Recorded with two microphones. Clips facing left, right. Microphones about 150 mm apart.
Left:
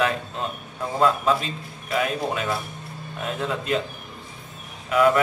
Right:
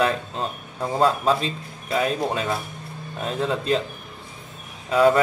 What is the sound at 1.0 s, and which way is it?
A man's voice, 30° right (ahead or behind).